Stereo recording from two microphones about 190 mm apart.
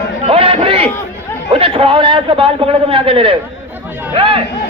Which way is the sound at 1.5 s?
30° right (ahead or behind).